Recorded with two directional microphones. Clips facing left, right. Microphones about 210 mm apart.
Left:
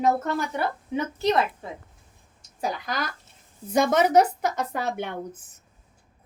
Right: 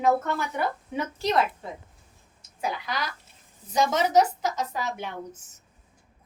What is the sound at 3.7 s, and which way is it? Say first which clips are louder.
A woman's voice: left 3 dB; 60° left (ahead or behind).